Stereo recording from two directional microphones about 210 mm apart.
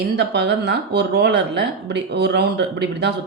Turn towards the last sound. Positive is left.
turn(degrees=-55)  # may be behind; listen again after turning